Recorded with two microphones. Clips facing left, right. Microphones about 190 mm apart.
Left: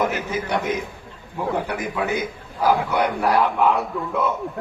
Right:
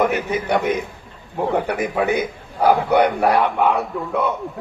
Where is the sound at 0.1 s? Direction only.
60° right (ahead or behind).